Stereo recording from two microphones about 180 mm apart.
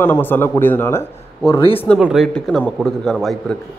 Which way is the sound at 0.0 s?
10° left (ahead or behind).